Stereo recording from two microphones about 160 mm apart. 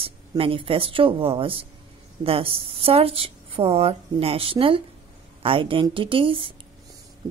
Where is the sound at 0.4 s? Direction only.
35° right (ahead or behind).